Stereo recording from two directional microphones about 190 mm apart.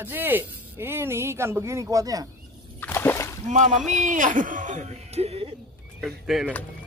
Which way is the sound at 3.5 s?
40° right (ahead or behind).